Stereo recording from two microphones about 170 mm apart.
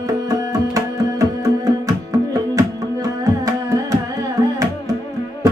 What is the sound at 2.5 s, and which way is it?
Carnatic music, 20° right (ahead or behind).